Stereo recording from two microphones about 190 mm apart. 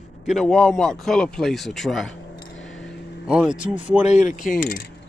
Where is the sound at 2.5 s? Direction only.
80° left.